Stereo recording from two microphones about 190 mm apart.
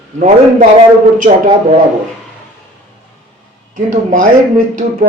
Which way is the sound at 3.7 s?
45° right (ahead or behind).